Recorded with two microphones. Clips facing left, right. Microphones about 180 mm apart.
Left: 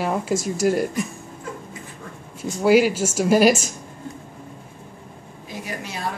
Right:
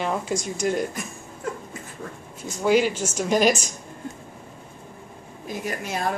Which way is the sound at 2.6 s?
5° left (ahead or behind).